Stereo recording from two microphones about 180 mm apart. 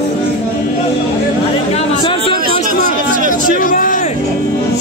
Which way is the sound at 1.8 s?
30° left (ahead or behind).